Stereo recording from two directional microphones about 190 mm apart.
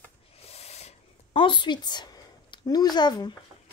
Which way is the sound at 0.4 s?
35° left (ahead or behind).